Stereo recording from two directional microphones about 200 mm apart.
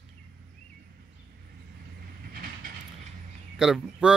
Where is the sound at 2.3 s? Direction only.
45° right (ahead or behind).